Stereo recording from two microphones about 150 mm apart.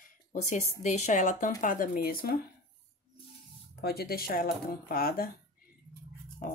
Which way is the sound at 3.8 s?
90° left.